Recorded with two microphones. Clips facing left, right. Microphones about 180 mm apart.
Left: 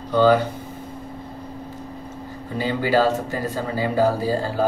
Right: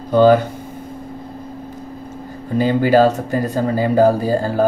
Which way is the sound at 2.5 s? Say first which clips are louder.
Right 7 dB; 45° right (ahead or behind).